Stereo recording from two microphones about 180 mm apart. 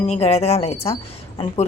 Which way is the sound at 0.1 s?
35° left (ahead or behind).